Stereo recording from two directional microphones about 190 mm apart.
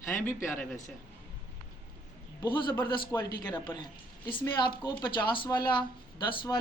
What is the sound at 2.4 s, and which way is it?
Speech, 25° left (ahead or behind).